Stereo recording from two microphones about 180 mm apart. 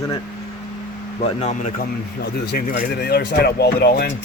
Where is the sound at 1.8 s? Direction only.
60° left (ahead or behind).